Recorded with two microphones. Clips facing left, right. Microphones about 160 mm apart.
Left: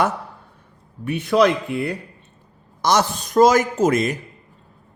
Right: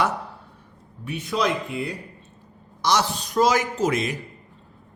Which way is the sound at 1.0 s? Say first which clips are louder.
Left 8 dB; 60° left (ahead or behind).